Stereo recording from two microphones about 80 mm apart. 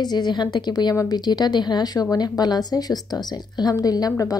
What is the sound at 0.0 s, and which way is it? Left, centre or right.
A woman's voice, left.